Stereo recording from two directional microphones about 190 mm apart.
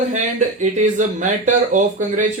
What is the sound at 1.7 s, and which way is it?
Speech, 40° right (ahead or behind).